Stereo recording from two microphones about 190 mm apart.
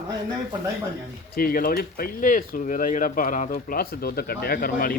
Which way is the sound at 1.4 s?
50° left (ahead or behind).